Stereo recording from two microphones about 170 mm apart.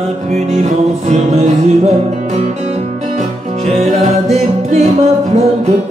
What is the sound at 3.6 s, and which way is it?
Music, 40° right (ahead or behind).